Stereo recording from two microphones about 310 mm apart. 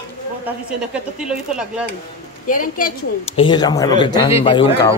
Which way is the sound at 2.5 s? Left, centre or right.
Left.